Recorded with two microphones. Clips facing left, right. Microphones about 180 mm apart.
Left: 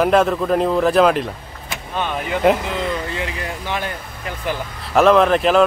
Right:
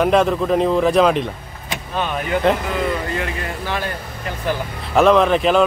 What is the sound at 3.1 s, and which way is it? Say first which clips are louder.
Speech: right 1 dB; 15° left (ahead or behind).